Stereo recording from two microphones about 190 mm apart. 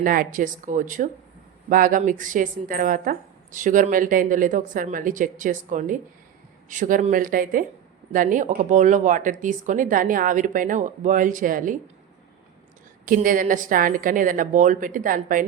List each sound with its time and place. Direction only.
0.0 s speech: 50° right (ahead or behind)
13.1 s speech: 45° right (ahead or behind)